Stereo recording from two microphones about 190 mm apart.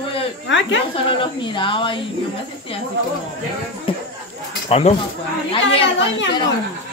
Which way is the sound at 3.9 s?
25° left (ahead or behind).